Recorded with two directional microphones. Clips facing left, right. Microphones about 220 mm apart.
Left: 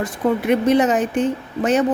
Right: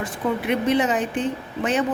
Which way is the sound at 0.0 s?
45° left (ahead or behind).